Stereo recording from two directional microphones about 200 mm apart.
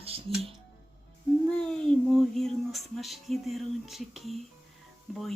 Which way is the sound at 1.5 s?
5° left (ahead or behind).